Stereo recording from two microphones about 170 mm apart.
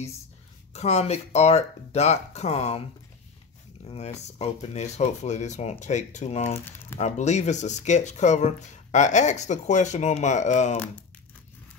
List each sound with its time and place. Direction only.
0.7 s speech: 40° left (ahead or behind)
3.8 s speech: 40° left (ahead or behind)
6.5 s speech: 15° left (ahead or behind)
7.0 s speech: 40° left (ahead or behind)